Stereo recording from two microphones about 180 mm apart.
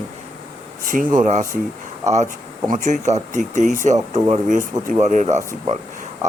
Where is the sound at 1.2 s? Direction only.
45° right (ahead or behind).